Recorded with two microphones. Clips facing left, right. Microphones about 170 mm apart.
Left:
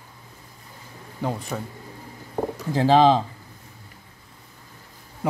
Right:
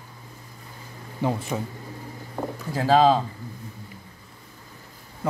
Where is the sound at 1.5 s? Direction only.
5° right (ahead or behind).